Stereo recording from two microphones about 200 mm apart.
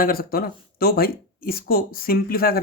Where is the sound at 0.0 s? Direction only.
45° left (ahead or behind).